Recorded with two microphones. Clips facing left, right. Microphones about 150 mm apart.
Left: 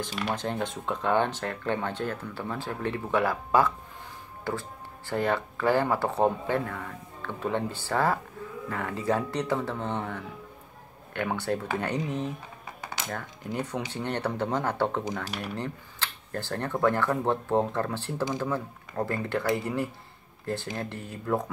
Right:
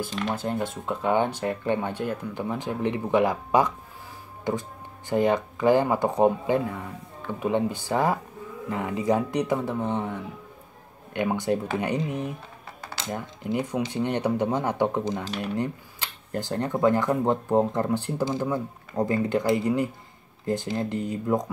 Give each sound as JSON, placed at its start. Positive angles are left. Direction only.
{"t": 0.3, "sound": "speech", "side_deg": -5}